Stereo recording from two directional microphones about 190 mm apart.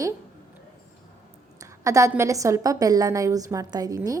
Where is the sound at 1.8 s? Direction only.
15° right (ahead or behind).